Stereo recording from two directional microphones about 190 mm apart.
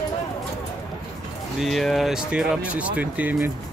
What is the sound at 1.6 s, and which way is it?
Speech, centre (ahead or behind).